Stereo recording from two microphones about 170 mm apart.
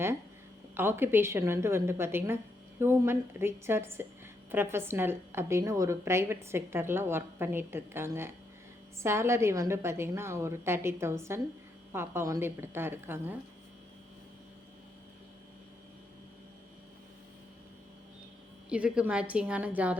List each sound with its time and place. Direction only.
0.8 s a woman's voice: 15° right (ahead or behind)
18.7 s a woman's voice: 5° right (ahead or behind)